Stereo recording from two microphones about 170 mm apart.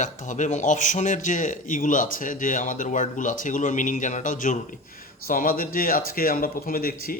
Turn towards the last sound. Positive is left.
turn(degrees=60)  # may be behind; listen again after turning